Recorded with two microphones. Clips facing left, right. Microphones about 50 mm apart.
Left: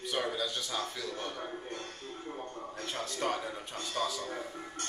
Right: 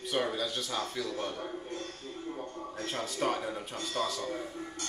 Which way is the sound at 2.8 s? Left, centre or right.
Centre.